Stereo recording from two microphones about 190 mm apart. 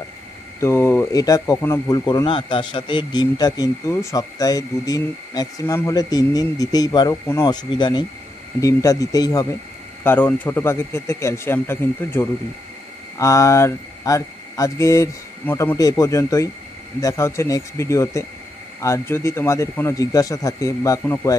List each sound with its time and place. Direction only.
0.6 s speech: 15° left (ahead or behind)